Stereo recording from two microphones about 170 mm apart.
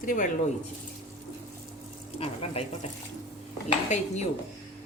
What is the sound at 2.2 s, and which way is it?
Speech, 35° left (ahead or behind).